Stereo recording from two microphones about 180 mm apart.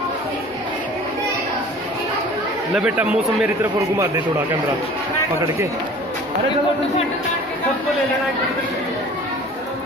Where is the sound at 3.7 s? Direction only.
20° right (ahead or behind).